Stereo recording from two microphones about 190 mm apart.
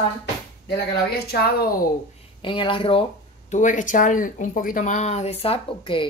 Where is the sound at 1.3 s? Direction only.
55° left (ahead or behind).